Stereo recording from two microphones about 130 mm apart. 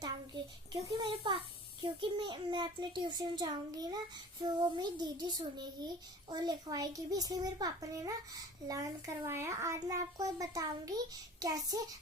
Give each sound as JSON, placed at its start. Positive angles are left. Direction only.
{"t": 0.8, "sound": "a child's voice", "side_deg": -40}